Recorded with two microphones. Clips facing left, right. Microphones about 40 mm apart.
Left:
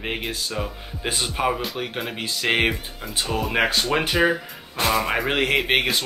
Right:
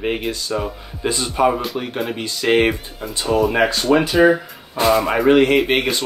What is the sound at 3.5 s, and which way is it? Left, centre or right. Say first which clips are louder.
Speech: right 5 dB; centre.